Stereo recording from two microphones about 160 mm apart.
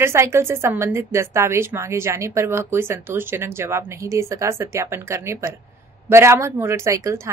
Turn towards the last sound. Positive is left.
turn(degrees=-20)  # may be behind; listen again after turning